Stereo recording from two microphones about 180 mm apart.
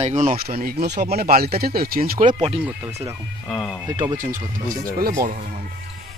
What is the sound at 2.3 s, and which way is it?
Speech, 30° right (ahead or behind).